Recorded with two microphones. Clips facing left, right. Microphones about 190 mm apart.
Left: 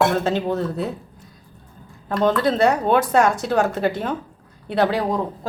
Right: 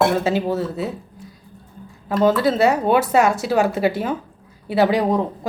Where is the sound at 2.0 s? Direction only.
5° right (ahead or behind).